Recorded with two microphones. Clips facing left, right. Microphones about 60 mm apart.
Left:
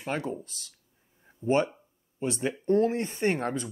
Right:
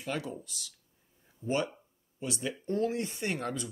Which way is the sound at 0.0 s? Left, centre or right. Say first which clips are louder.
Left 4 dB; left.